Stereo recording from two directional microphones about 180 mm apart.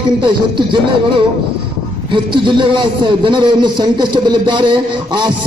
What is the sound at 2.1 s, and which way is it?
A man's voice, 25° right (ahead or behind).